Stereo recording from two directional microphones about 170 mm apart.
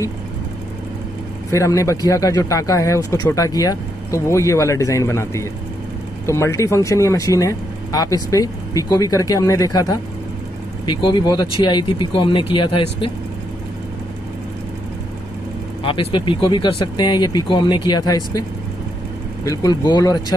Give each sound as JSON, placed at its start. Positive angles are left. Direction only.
{"t": 1.5, "sound": "speech", "side_deg": 20}
{"t": 15.8, "sound": "speech", "side_deg": 30}
{"t": 19.4, "sound": "speech", "side_deg": 20}